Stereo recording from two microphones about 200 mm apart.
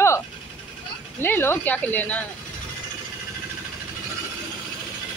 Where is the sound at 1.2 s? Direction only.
10° left (ahead or behind).